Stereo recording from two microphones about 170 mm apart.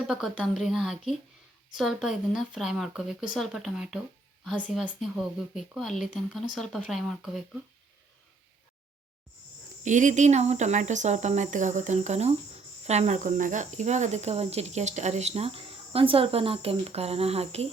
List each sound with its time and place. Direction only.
0.1 s speech: centre (ahead or behind)
9.8 s speech: 45° right (ahead or behind)
12.9 s cricket: 40° right (ahead or behind)